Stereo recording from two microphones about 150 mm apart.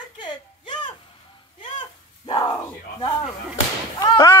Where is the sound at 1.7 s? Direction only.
30° left (ahead or behind).